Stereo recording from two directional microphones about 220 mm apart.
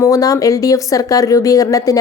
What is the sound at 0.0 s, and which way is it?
Speech, 15° left (ahead or behind).